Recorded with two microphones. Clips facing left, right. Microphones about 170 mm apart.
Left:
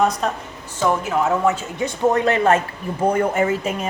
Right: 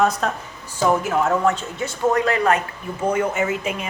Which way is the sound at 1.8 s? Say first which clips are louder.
Left 2 dB; 20° left (ahead or behind).